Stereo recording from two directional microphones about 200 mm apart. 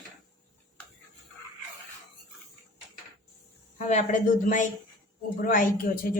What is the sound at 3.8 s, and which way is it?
A woman's voice, 35° left (ahead or behind).